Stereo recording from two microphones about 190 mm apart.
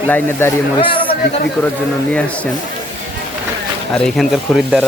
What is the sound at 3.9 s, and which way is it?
Speech, centre (ahead or behind).